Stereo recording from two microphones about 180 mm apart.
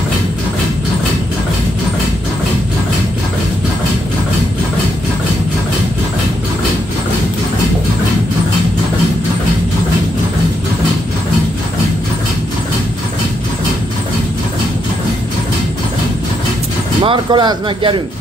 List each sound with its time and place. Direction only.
17.0 s speech: 25° right (ahead or behind)